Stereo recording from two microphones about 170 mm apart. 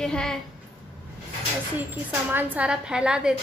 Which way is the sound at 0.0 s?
5° left (ahead or behind).